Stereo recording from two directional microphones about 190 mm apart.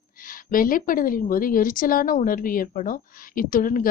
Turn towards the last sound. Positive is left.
turn(degrees=45)  # may be behind; listen again after turning